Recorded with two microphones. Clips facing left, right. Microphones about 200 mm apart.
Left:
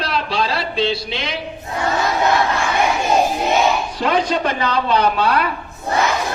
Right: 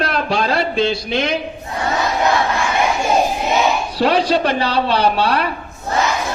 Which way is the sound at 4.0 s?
35° right (ahead or behind).